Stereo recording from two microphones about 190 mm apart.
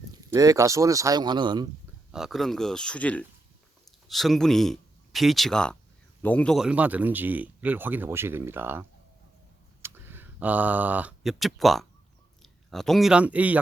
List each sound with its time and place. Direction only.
0.3 s speech: 15° right (ahead or behind)
2.1 s speech: centre (ahead or behind)